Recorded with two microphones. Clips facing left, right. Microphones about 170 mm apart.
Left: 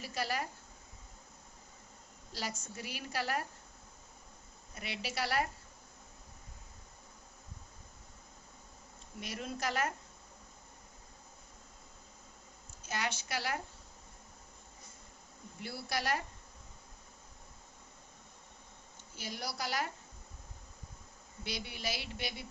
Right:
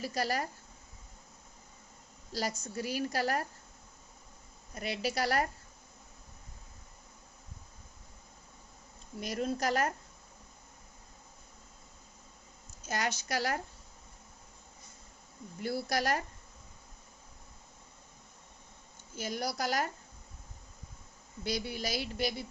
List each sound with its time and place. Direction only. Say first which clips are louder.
0.0 s speech: right 4 dB; 40° right (ahead or behind)
2.3 s a woman's voice: right 6 dB; 40° right (ahead or behind)
4.7 s a woman's voice: right 7 dB; 40° right (ahead or behind)
9.2 s a woman's voice: right 6 dB; 40° right (ahead or behind)
12.9 s a woman's voice: right 4 dB; 40° right (ahead or behind)
15.6 s a woman's voice: right 6 dB; 45° right (ahead or behind)
19.1 s a woman's voice: right 6 dB; 45° right (ahead or behind)
21.4 s a woman's voice: right 5 dB; 40° right (ahead or behind)